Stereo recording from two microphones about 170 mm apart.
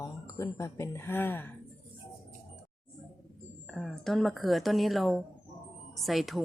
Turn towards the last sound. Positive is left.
turn(degrees=0)  # may be behind; listen again after turning